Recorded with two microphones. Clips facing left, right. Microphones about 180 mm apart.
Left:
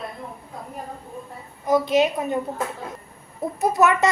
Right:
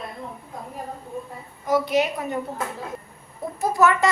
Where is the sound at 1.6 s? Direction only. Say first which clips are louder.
Left 2 dB; 20° left (ahead or behind).